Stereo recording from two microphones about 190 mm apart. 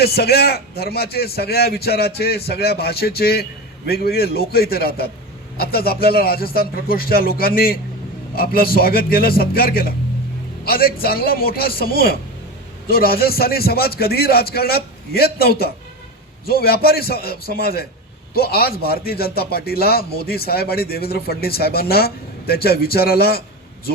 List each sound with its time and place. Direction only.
0.0 s a man's voice: 55° left (ahead or behind)